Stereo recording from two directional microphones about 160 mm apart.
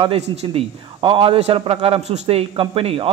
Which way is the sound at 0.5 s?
35° right (ahead or behind).